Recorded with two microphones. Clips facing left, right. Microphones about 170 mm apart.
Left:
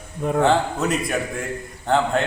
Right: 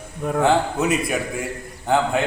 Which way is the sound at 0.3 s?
5° right (ahead or behind).